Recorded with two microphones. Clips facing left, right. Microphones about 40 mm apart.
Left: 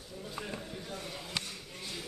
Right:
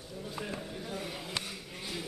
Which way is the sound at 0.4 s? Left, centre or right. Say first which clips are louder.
Right 2 dB; centre.